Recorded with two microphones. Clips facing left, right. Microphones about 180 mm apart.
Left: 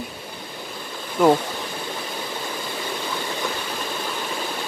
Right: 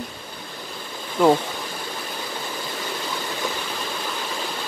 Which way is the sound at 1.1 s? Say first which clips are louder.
Even; 5° left (ahead or behind).